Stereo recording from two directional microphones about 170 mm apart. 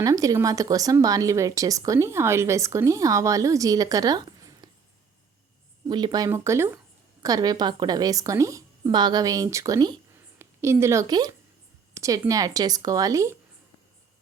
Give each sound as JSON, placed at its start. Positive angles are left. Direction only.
{"t": 0.0, "sound": "speech", "side_deg": -20}
{"t": 5.9, "sound": "a woman's voice", "side_deg": -25}